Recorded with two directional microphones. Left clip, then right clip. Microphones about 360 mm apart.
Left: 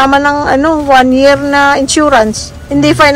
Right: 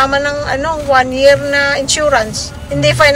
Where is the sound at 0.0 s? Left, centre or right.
Centre.